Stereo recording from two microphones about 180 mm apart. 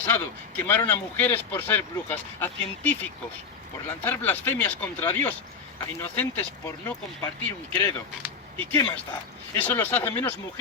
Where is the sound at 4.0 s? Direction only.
10° left (ahead or behind).